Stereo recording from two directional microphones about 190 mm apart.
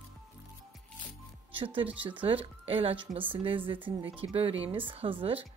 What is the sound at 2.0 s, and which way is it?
Speech, 25° right (ahead or behind).